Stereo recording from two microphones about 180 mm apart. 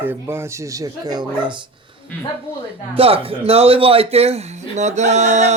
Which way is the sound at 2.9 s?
30° right (ahead or behind).